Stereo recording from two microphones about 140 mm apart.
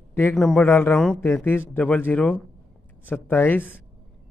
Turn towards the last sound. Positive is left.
turn(degrees=15)  # may be behind; listen again after turning